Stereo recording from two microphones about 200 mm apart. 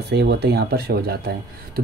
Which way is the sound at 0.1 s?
55° right (ahead or behind).